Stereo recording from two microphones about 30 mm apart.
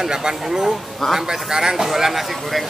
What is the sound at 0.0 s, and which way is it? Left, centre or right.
Speech, centre.